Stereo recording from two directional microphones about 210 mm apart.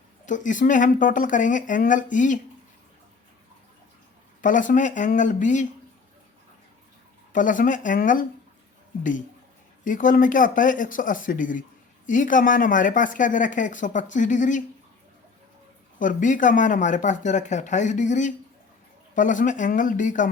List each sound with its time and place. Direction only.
0.3 s a woman's voice: 35° left (ahead or behind)
4.4 s a woman's voice: 40° left (ahead or behind)
7.3 s a woman's voice: 40° left (ahead or behind)
9.8 s a woman's voice: 40° left (ahead or behind)
16.0 s a woman's voice: 40° left (ahead or behind)